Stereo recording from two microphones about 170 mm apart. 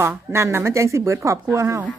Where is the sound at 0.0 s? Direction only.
15° right (ahead or behind).